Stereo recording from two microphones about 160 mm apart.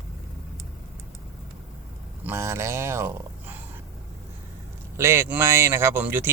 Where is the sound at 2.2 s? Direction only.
15° right (ahead or behind).